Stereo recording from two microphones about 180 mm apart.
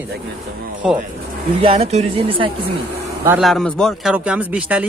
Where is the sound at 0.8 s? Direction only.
5° right (ahead or behind).